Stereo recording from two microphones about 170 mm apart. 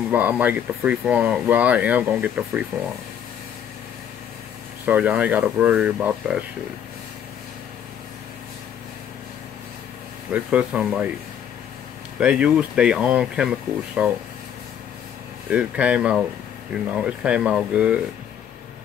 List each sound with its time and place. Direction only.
0.1 s speech: 10° right (ahead or behind)
4.8 s speech: 10° right (ahead or behind)
10.3 s speech: 5° right (ahead or behind)
12.2 s speech: 5° right (ahead or behind)
15.5 s speech: 5° right (ahead or behind)